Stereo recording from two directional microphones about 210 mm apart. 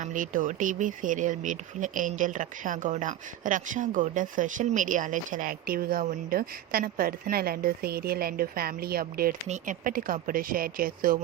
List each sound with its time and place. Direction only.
0.0 s speech: 40° right (ahead or behind)